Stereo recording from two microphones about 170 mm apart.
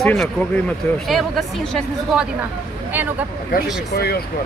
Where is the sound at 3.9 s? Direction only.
65° left (ahead or behind).